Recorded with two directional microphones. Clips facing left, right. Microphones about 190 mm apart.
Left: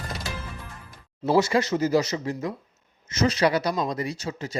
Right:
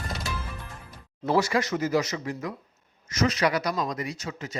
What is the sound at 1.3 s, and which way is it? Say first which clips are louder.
Speech: left 3 dB; 25° left (ahead or behind).